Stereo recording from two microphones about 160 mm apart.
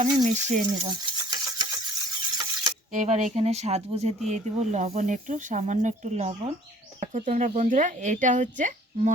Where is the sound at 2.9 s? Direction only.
50° right (ahead or behind).